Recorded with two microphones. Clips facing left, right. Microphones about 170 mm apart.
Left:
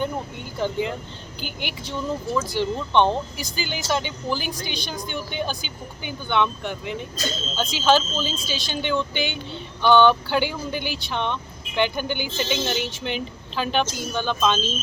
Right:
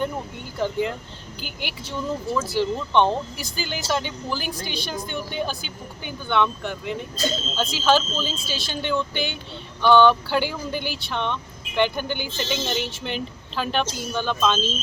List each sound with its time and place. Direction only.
0.6 s speech: centre (ahead or behind)
13.8 s speech: 35° right (ahead or behind)
14.1 s speech: centre (ahead or behind)